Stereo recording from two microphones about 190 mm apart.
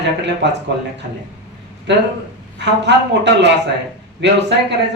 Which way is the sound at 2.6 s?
65° right (ahead or behind).